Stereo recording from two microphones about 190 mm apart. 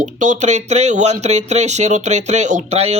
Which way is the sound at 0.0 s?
40° right (ahead or behind).